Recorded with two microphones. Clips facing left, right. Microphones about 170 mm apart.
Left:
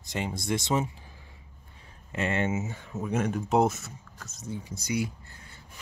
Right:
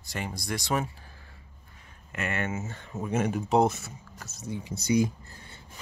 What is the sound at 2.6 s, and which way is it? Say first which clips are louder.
Speech: left 2 dB; 5° left (ahead or behind).